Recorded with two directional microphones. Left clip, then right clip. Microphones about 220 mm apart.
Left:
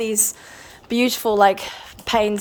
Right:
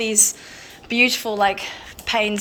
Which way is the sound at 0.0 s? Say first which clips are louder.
Right 3 dB; 20° left (ahead or behind).